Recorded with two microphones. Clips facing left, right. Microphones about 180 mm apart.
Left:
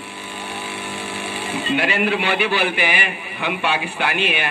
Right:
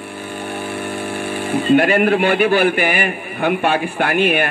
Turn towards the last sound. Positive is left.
turn(degrees=-50)  # may be behind; listen again after turning